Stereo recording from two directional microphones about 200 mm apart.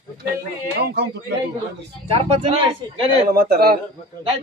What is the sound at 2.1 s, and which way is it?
Speech, 30° right (ahead or behind).